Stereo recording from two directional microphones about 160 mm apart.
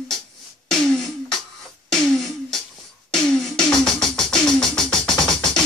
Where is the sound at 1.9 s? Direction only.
5° left (ahead or behind).